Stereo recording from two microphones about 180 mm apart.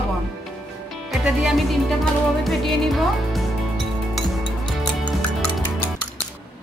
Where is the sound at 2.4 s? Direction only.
Centre (ahead or behind).